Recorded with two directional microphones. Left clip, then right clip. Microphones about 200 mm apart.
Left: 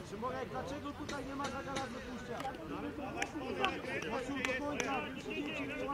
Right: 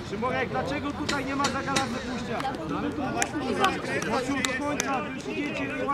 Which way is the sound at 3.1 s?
50° right (ahead or behind).